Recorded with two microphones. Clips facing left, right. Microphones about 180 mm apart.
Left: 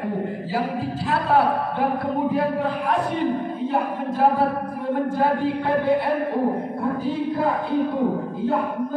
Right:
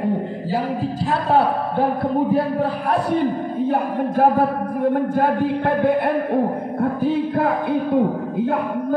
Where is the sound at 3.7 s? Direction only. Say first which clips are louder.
Right 3 dB; 50° right (ahead or behind).